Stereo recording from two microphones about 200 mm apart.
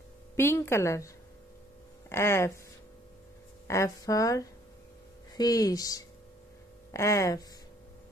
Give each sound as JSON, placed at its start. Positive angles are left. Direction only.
{"t": 0.4, "sound": "speech", "side_deg": 10}
{"t": 3.6, "sound": "speech", "side_deg": 15}